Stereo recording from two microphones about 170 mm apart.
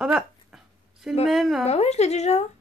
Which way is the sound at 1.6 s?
40° left (ahead or behind).